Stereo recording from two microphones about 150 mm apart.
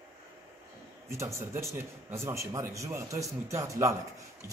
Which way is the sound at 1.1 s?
20° right (ahead or behind).